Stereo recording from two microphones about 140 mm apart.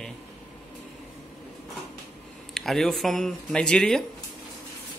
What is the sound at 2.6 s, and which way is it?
Speech, centre (ahead or behind).